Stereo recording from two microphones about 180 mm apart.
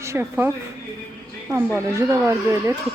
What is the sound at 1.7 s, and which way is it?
A woman's voice, 15° right (ahead or behind).